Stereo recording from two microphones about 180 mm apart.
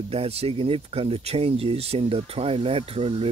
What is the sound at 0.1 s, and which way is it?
Speech, 35° right (ahead or behind).